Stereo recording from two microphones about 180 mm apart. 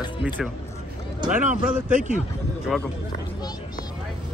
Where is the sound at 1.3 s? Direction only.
45° right (ahead or behind).